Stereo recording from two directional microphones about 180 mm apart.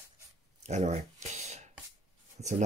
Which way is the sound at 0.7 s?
40° right (ahead or behind).